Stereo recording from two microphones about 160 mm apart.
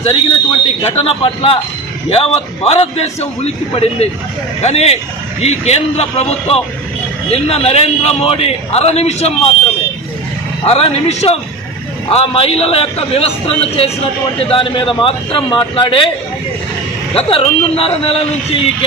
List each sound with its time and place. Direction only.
0.0 s a man's voice: 40° left (ahead or behind)
10.6 s a man's voice: 40° left (ahead or behind)
17.1 s a man's voice: 35° left (ahead or behind)